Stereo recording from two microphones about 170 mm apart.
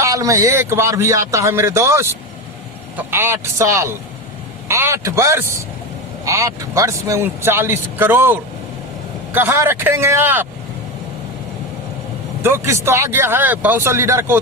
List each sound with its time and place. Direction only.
0.0 s speech: 20° right (ahead or behind)
12.4 s speech: 15° right (ahead or behind)